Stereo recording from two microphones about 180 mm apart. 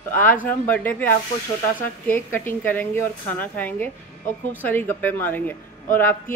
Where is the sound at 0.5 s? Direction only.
10° left (ahead or behind).